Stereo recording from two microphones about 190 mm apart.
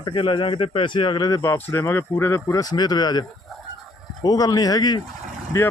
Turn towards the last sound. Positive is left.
turn(degrees=15)  # may be behind; listen again after turning